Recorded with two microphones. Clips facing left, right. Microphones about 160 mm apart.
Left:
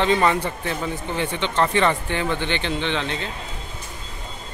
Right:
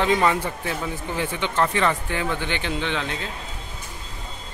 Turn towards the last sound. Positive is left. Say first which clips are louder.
# left 2 dB
turn(degrees=-5)  # may be behind; listen again after turning